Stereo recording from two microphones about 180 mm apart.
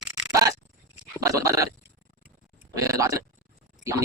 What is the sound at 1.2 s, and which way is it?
Dog, 15° right (ahead or behind).